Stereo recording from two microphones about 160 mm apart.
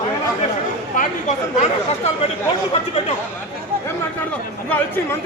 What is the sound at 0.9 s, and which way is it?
Speech, 50° left (ahead or behind).